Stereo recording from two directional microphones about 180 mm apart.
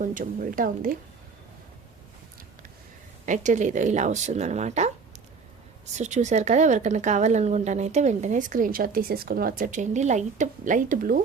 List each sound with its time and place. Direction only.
0.0 s speech: 45° right (ahead or behind)
3.2 s speech: 45° right (ahead or behind)